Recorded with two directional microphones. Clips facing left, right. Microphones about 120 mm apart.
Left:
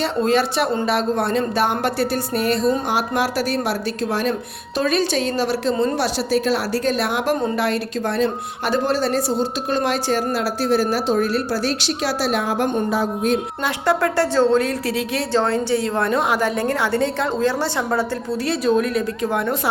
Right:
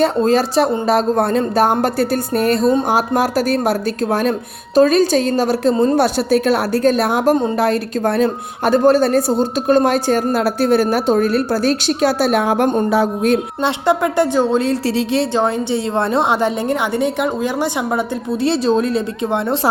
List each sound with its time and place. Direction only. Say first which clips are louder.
0.2 s a woman's voice: right 4 dB; 40° right (ahead or behind); by 13.4 s 70° right (ahead or behind)
13.6 s a woman's voice: right 4 dB; 25° right (ahead or behind)
14.7 s a woman's voice: right 6 dB; 30° right (ahead or behind)